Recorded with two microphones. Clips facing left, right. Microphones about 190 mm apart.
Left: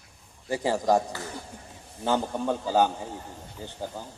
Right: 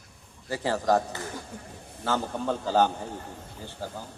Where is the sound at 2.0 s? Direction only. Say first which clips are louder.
Left 2 dB; 15° left (ahead or behind).